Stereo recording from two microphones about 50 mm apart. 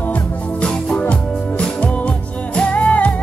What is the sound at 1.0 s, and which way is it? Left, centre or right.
Music, left.